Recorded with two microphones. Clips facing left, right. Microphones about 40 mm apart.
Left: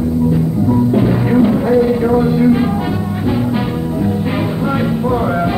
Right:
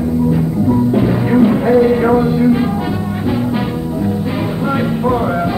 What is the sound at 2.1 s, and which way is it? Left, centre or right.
Music, centre.